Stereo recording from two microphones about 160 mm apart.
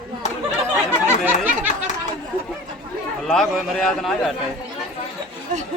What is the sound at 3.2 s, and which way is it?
Speech, 5° left (ahead or behind).